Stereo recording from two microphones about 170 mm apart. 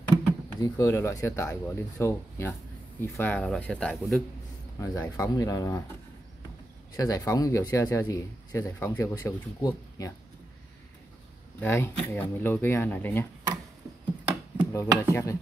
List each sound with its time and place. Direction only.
0.6 s speech: 20° left (ahead or behind); by 4.2 s centre (ahead or behind)
4.7 s speech: 20° left (ahead or behind)
7.0 s speech: 20° left (ahead or behind)
11.6 s speech: 15° left (ahead or behind)
14.7 s speech: 20° left (ahead or behind)